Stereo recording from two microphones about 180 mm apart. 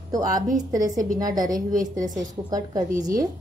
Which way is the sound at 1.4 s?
50° right (ahead or behind).